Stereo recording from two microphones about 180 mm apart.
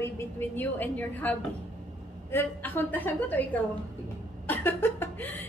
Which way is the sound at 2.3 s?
10° left (ahead or behind).